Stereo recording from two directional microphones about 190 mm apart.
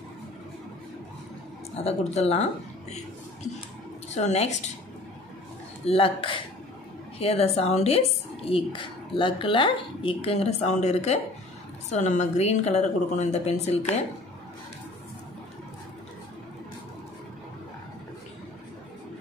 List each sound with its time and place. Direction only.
1.9 s speech: 35° left (ahead or behind)
4.1 s speech: 35° left (ahead or behind)
5.9 s speech: 30° left (ahead or behind)